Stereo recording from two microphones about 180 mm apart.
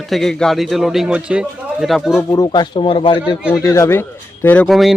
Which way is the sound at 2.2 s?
20° left (ahead or behind).